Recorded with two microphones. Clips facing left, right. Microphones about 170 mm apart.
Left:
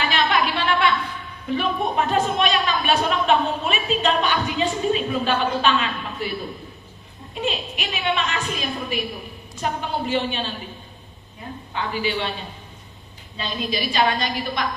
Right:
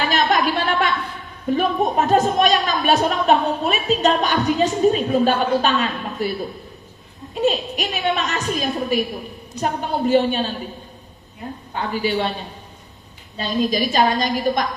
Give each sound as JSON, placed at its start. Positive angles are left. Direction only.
{"t": 0.0, "sound": "a sound", "side_deg": -40}
{"t": 1.5, "sound": "a woman's voice", "side_deg": -40}
{"t": 7.3, "sound": "a woman's voice", "side_deg": -40}
{"t": 11.7, "sound": "a woman's voice", "side_deg": -40}
{"t": 13.3, "sound": "a woman's voice", "side_deg": -40}